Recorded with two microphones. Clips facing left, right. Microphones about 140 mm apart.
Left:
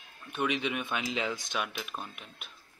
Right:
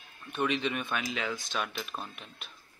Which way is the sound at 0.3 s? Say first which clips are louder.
Right 1 dB; 10° left (ahead or behind).